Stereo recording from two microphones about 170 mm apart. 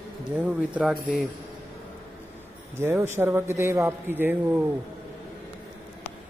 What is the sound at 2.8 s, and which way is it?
A man's voice, 15° right (ahead or behind).